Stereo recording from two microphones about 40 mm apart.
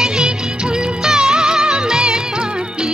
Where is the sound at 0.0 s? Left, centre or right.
Centre.